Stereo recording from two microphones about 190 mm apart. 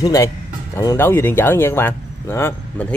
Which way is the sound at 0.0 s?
20° left (ahead or behind).